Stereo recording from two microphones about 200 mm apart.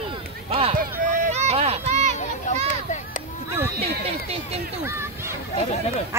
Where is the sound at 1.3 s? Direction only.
35° right (ahead or behind).